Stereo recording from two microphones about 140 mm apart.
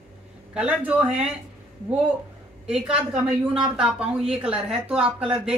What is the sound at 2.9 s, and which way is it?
A woman's voice, 5° right (ahead or behind).